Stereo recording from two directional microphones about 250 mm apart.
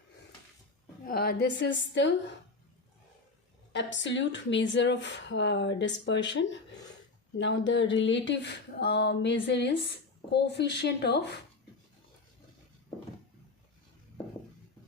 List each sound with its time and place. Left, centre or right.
1.0 s speech: left
3.7 s speech: left